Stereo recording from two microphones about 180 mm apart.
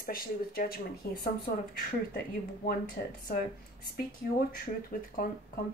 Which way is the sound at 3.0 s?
50° left (ahead or behind).